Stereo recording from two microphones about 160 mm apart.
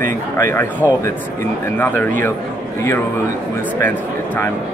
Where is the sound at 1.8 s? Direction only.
10° left (ahead or behind).